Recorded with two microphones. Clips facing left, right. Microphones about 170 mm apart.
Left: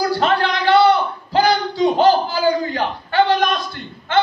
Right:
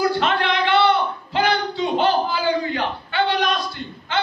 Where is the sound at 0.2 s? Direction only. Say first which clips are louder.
Left 3 dB; 40° left (ahead or behind).